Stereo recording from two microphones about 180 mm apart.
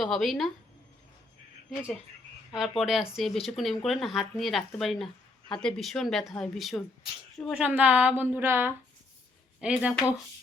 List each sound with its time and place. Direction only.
0.0 s speech: centre (ahead or behind)
2.5 s a woman's voice: centre (ahead or behind)